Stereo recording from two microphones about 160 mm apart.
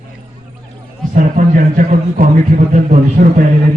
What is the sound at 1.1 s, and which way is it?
A man's voice, 55° right (ahead or behind).